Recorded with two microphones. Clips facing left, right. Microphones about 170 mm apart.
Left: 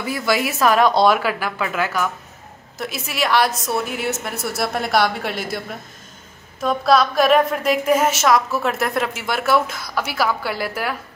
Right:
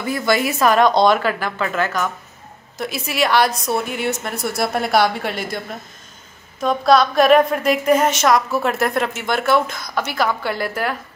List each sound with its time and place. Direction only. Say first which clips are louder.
0.0 s a woman's voice: right 2 dB; 5° left (ahead or behind)
6.6 s a woman's voice: right 2 dB; centre (ahead or behind)